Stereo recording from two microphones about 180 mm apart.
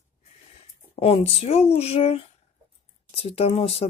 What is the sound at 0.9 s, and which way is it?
Speech, 35° left (ahead or behind).